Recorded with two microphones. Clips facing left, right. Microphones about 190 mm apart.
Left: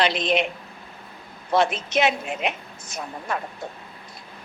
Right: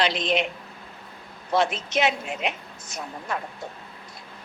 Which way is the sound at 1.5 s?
60° left (ahead or behind).